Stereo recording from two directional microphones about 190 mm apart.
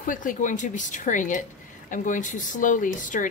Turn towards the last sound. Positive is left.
turn(degrees=45)  # may be behind; listen again after turning